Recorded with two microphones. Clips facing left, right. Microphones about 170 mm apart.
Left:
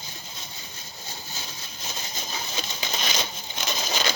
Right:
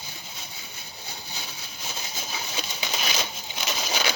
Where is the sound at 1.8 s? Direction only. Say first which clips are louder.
Even; 10° right (ahead or behind).